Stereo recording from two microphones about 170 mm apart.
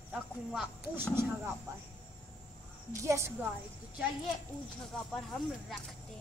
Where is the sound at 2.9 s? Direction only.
15° right (ahead or behind).